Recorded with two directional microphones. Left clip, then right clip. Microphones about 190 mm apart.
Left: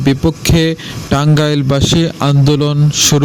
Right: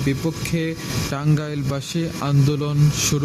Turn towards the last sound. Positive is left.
turn(degrees=40)  # may be behind; listen again after turning